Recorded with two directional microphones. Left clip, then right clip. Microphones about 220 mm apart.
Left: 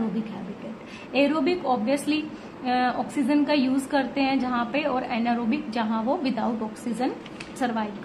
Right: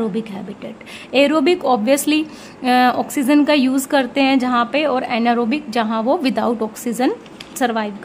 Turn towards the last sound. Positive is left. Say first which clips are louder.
# right 8 dB
turn(degrees=-45)  # may be behind; listen again after turning